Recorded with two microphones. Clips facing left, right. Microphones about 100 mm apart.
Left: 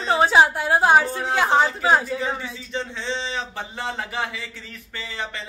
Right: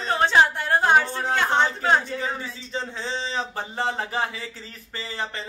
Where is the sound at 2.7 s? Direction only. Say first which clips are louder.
Left 2 dB; 40° right (ahead or behind).